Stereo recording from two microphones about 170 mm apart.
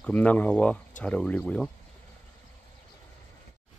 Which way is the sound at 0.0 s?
5° left (ahead or behind).